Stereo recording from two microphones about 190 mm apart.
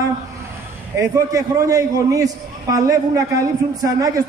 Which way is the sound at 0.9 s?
15° right (ahead or behind).